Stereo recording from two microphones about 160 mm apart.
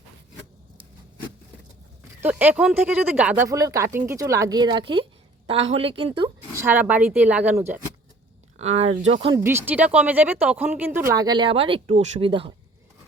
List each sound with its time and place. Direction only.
2.2 s speech: 10° right (ahead or behind); by 6.3 s 30° right (ahead or behind)
6.5 s speech: 15° right (ahead or behind)
8.5 s speech: 40° right (ahead or behind)
9.4 s speech: 15° right (ahead or behind); by 12.5 s 35° right (ahead or behind)